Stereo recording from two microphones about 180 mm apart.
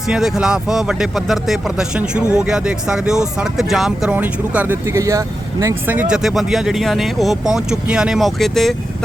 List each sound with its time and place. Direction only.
0.1 s speech: 5° right (ahead or behind)